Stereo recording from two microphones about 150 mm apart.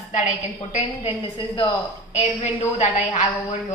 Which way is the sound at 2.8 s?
50° left (ahead or behind).